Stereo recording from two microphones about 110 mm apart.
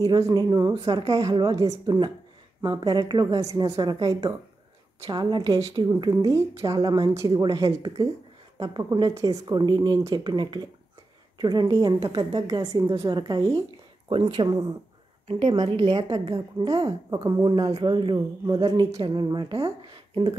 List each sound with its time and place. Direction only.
0.0 s a woman's voice: 40° right (ahead or behind)
16.3 s a woman's voice: 35° right (ahead or behind)
19.9 s speech: 45° right (ahead or behind)